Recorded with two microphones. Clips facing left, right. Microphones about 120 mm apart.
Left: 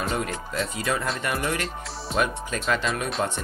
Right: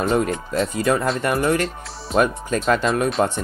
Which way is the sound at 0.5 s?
40° right (ahead or behind).